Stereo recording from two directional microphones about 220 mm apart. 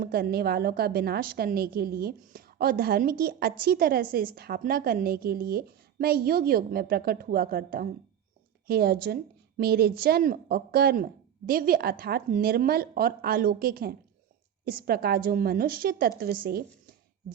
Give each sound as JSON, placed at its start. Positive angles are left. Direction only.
{"t": 0.0, "sound": "a woman's voice", "side_deg": -45}